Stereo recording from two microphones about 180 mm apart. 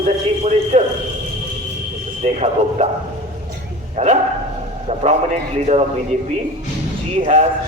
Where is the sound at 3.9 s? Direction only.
40° right (ahead or behind).